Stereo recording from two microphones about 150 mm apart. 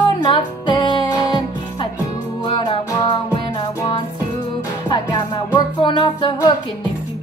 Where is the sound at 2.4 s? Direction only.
35° left (ahead or behind).